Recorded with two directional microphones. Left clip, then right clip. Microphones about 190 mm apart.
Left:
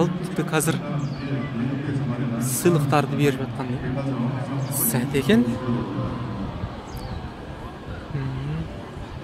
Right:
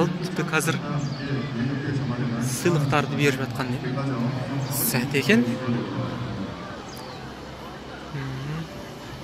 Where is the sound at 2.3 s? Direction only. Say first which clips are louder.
Left 3 dB; 30° left (ahead or behind).